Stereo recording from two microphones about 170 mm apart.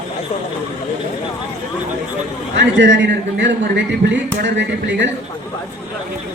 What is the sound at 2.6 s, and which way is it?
Speech, 90° right.